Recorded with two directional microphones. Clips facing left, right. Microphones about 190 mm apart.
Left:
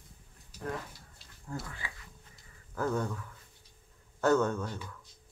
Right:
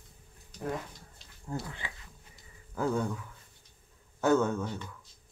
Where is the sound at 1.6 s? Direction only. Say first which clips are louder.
Right 2 dB; 20° right (ahead or behind).